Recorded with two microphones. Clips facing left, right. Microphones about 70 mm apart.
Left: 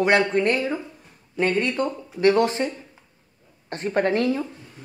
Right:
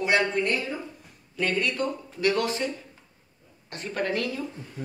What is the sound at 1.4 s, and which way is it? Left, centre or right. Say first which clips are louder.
A woman's voice: left 4 dB; left.